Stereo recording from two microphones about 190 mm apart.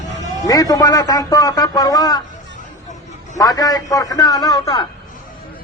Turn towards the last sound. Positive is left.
turn(degrees=20)  # may be behind; listen again after turning